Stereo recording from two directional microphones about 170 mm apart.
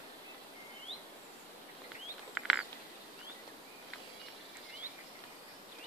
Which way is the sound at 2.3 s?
5° right (ahead or behind).